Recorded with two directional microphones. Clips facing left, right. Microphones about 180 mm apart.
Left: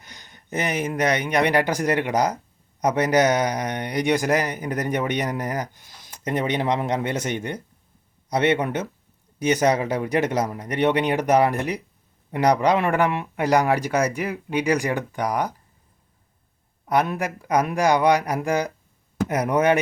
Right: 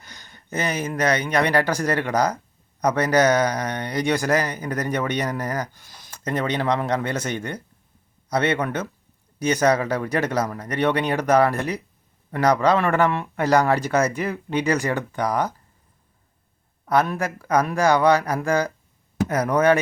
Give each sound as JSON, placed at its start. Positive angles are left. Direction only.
{"t": 0.0, "sound": "speech", "side_deg": 20}
{"t": 16.9, "sound": "speech", "side_deg": 15}